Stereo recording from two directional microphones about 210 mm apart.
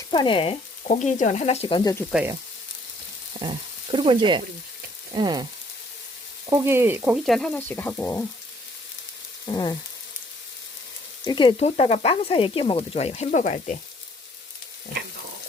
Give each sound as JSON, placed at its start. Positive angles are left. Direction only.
{"t": 0.1, "sound": "sizzle", "side_deg": 25}
{"t": 3.4, "sound": "frying", "side_deg": -25}
{"t": 6.5, "sound": "frying", "side_deg": -10}
{"t": 9.5, "sound": "sizzle", "side_deg": 20}
{"t": 11.3, "sound": "sizzle", "side_deg": 20}